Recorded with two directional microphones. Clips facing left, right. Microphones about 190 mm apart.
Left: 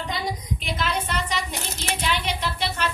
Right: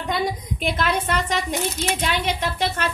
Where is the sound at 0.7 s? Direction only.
50° right (ahead or behind).